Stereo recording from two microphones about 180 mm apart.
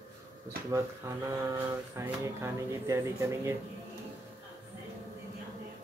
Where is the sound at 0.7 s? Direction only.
15° right (ahead or behind).